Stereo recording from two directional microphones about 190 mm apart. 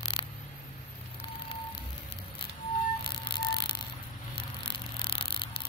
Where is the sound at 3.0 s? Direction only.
25° left (ahead or behind).